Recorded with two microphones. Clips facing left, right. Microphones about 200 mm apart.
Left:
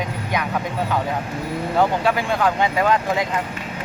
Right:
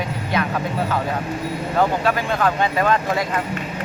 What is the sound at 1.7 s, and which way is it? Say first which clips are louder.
Speech: even; 15° left (ahead or behind).